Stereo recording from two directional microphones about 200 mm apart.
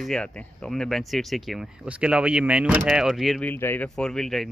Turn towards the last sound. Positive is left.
turn(degrees=0)  # may be behind; listen again after turning